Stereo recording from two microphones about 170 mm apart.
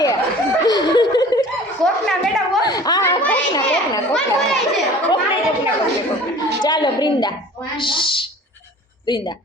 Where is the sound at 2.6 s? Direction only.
25° left (ahead or behind).